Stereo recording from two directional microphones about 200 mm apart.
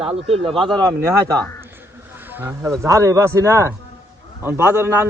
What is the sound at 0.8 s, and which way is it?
Speech, 15° right (ahead or behind).